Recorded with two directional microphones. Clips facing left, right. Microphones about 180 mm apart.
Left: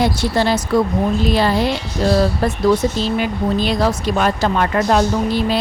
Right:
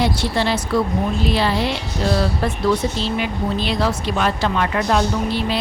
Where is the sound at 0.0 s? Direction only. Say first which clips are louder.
Left 3 dB; 45° left (ahead or behind).